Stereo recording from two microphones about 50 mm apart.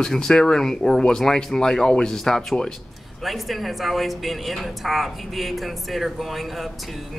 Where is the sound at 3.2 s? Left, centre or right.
Centre.